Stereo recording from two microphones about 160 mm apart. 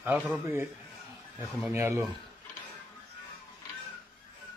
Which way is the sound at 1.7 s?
15° right (ahead or behind).